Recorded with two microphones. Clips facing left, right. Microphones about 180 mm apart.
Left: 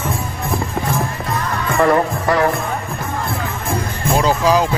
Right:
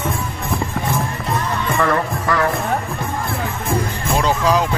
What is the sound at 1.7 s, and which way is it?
Music, 30° left (ahead or behind).